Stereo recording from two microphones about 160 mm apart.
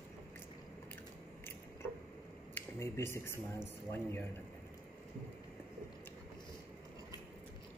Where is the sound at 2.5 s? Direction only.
15° left (ahead or behind).